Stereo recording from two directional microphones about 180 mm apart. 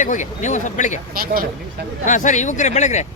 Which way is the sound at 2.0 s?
45° left (ahead or behind).